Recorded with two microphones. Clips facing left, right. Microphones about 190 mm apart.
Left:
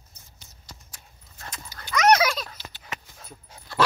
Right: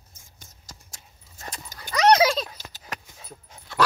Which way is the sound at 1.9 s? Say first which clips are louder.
Right 2 dB; 30° right (ahead or behind).